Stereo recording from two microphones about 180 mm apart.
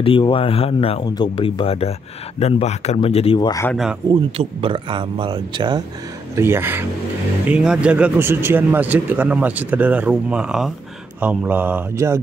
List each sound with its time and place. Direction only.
0.0 s speech: 30° left (ahead or behind)
4.1 s speech: 30° right (ahead or behind)
6.3 s speech: 15° right (ahead or behind)